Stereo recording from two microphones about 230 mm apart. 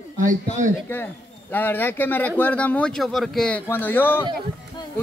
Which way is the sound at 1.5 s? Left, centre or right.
Centre.